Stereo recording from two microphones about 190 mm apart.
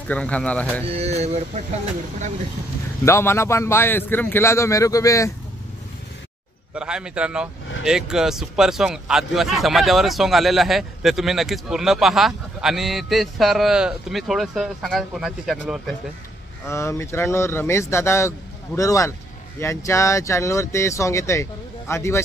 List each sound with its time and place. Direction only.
0.1 s speech: 5° left (ahead or behind)
0.8 s mantra: 35° right (ahead or behind)
3.1 s speech: 15° left (ahead or behind)
6.7 s speech: 5° right (ahead or behind)
16.6 s speech: 15° left (ahead or behind)